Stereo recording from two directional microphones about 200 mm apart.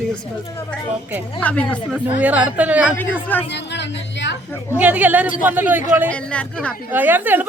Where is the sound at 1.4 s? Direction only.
5° left (ahead or behind).